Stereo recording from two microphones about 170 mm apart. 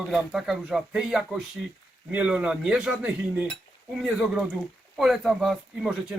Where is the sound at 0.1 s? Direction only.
Centre (ahead or behind).